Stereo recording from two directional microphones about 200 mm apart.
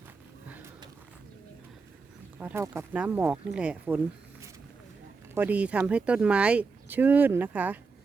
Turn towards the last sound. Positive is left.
turn(degrees=-10)  # may be behind; listen again after turning